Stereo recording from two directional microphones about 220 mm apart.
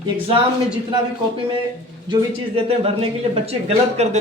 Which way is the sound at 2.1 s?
25° right (ahead or behind).